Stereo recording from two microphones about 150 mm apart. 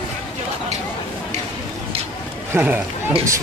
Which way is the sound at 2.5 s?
10° right (ahead or behind).